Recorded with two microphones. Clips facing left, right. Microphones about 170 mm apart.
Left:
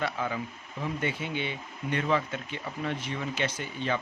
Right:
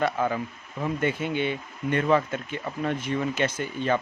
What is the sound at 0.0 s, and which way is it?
Speech, 50° right (ahead or behind).